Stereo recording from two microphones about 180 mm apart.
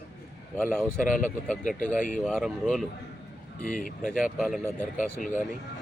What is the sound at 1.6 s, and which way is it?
Speech, 45° left (ahead or behind).